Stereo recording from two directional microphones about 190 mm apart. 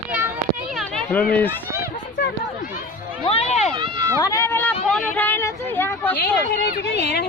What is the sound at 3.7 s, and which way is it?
Run, 25° right (ahead or behind).